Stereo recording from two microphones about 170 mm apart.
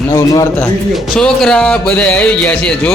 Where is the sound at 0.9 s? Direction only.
Centre (ahead or behind).